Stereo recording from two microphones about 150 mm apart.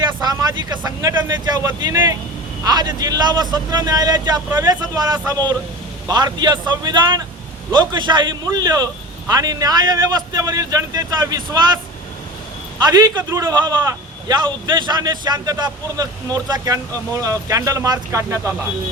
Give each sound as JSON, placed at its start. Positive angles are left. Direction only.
{"t": 0.2, "sound": "a man's voice", "side_deg": -25}
{"t": 12.8, "sound": "a man's voice", "side_deg": -25}